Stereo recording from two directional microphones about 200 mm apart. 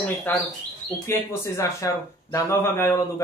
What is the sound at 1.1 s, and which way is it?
Speech, 15° left (ahead or behind).